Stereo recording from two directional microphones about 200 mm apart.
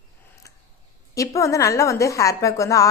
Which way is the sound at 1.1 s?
15° left (ahead or behind).